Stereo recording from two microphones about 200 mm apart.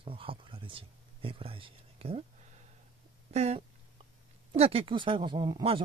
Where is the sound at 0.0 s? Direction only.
25° right (ahead or behind).